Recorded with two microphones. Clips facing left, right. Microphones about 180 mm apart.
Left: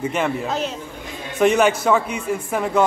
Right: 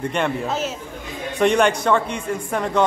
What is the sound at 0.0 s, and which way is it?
A man's voice, 5° left (ahead or behind).